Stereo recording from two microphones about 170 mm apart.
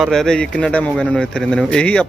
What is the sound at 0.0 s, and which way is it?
Speech, centre (ahead or behind).